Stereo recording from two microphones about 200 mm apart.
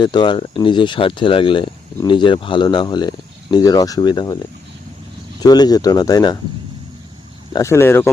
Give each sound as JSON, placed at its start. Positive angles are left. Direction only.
{"t": 0.0, "sound": "speech", "side_deg": 20}
{"t": 5.4, "sound": "speech", "side_deg": 20}
{"t": 7.5, "sound": "speech", "side_deg": 15}